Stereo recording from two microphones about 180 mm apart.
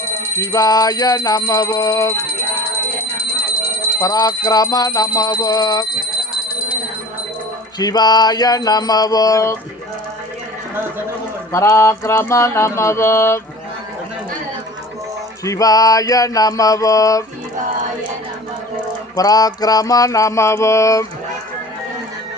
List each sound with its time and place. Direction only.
0.3 s mantra: 20° left (ahead or behind)
4.0 s mantra: 20° left (ahead or behind)
7.8 s mantra: 20° left (ahead or behind)
11.5 s mantra: 15° left (ahead or behind)
15.4 s mantra: 20° left (ahead or behind)
19.1 s mantra: 20° left (ahead or behind)